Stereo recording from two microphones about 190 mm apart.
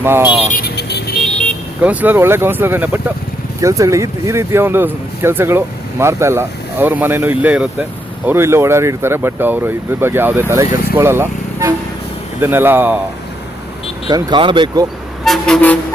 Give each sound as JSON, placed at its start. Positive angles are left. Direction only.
{"t": 0.0, "sound": "speech", "side_deg": -10}
{"t": 0.5, "sound": "vehicle", "side_deg": 55}
{"t": 1.2, "sound": "vehicle", "side_deg": 5}
{"t": 1.8, "sound": "speech", "side_deg": -10}
{"t": 14.1, "sound": "speech", "side_deg": -25}
{"t": 15.2, "sound": "vehicle", "side_deg": 5}